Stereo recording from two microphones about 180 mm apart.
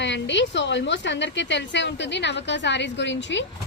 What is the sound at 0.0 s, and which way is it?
A woman's voice, 80° left.